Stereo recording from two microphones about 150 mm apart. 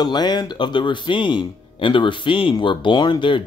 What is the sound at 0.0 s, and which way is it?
A man's voice, 30° left (ahead or behind).